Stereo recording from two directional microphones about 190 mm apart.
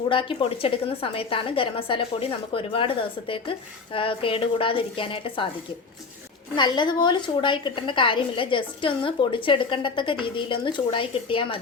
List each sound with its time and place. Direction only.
0.1 s a woman's voice: 25° left (ahead or behind)
6.6 s a woman's voice: 25° left (ahead or behind)